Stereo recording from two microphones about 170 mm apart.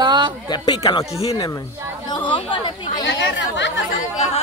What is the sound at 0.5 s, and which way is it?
Speech, 25° left (ahead or behind).